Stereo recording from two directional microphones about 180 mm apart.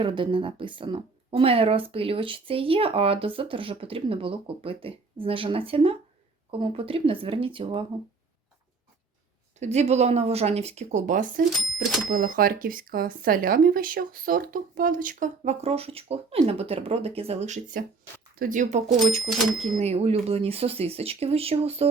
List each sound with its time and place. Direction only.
0.0 s speech: 30° right (ahead or behind)
9.6 s speech: 40° right (ahead or behind)
11.5 s speech: centre (ahead or behind)
12.0 s speech: 50° right (ahead or behind); by 21.8 s 35° right (ahead or behind)